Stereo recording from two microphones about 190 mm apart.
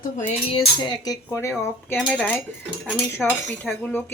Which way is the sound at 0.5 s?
25° left (ahead or behind).